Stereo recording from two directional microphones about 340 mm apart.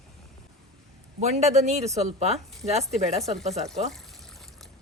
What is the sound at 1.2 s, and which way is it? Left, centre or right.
Speech, centre.